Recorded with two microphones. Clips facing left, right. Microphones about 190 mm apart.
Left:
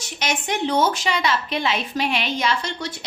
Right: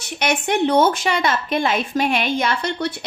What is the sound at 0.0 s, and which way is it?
A woman's voice, 60° right (ahead or behind).